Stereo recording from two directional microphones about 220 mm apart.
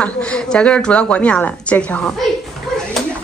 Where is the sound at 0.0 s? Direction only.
5° left (ahead or behind).